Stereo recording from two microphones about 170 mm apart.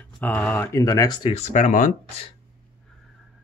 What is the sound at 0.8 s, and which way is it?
Speech, 20° left (ahead or behind).